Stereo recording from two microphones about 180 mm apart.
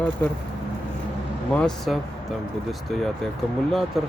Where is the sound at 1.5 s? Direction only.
5° left (ahead or behind).